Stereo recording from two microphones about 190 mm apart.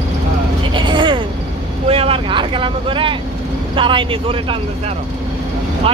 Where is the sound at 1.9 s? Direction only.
30° right (ahead or behind).